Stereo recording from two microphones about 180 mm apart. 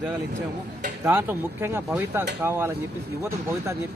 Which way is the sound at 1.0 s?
15° right (ahead or behind).